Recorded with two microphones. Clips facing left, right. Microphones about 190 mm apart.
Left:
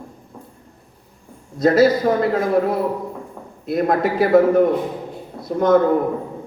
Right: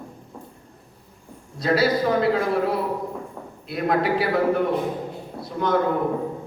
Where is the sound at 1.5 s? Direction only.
45° left (ahead or behind).